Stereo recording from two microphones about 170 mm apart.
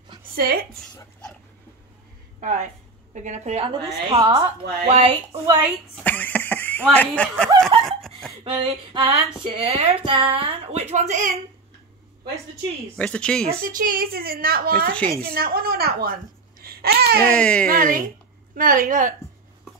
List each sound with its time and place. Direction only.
0.4 s a woman's voice: 60° right (ahead or behind)
2.4 s a woman's voice: 45° right (ahead or behind)
5.4 s a woman's voice: 15° right (ahead or behind)
6.0 s a sound: 10° left (ahead or behind)
7.8 s snicker: centre (ahead or behind)
8.5 s a woman's voice: 30° right (ahead or behind); by 11.3 s 45° right (ahead or behind)
12.9 s speech: 5° left (ahead or behind)
13.7 s a woman's voice: 55° right (ahead or behind)
16.6 s babbling: 65° right (ahead or behind)
17.2 s speech: 5° left (ahead or behind)
17.6 s a woman's voice: 55° right (ahead or behind)